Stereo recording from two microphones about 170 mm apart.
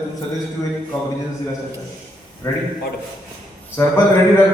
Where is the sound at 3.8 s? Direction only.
15° left (ahead or behind).